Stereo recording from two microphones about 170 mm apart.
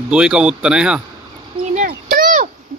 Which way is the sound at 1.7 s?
55° right (ahead or behind).